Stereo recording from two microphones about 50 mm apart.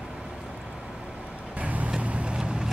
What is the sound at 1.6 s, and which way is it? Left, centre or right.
Vehicle, right.